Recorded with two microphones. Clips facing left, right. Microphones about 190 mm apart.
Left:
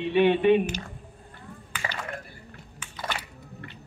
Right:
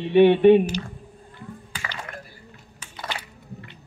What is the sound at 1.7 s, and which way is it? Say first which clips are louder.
Chop: left 3 dB; 35° right (ahead or behind).